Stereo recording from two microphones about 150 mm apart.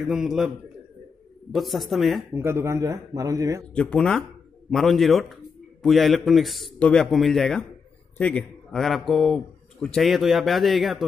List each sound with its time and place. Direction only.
0.1 s a man's voice: 5° right (ahead or behind)
1.5 s a man's voice: centre (ahead or behind)
2.3 s speech: 15° right (ahead or behind)
3.7 s a man's voice: 5° left (ahead or behind)